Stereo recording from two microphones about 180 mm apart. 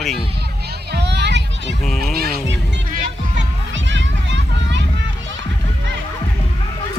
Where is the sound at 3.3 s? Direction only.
90° right.